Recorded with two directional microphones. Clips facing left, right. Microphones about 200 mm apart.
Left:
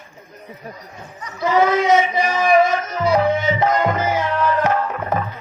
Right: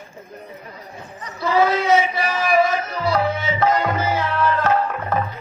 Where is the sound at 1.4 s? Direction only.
15° left (ahead or behind).